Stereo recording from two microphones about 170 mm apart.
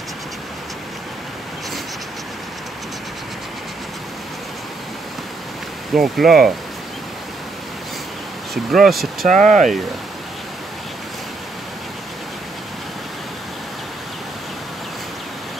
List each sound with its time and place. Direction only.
5.9 s speech: centre (ahead or behind)
8.6 s speech: centre (ahead or behind)
9.5 s speech: 50° right (ahead or behind)